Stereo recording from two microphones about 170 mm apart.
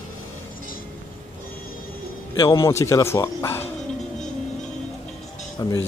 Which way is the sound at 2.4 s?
20° left (ahead or behind).